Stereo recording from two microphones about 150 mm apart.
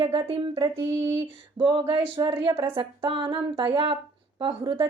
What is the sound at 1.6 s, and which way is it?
Speech, 30° right (ahead or behind).